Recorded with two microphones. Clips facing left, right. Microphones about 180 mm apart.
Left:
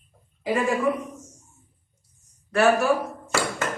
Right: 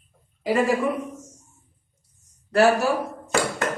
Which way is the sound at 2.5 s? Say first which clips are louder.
Right 1 dB; 35° right (ahead or behind).